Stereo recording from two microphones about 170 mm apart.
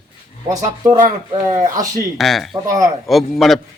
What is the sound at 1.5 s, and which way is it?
Speech, 20° right (ahead or behind).